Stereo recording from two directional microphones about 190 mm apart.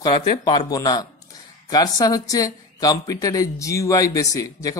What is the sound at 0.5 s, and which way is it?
Speech, 20° left (ahead or behind).